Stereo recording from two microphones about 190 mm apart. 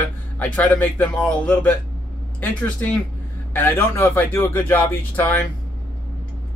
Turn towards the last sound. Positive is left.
turn(degrees=10)  # may be behind; listen again after turning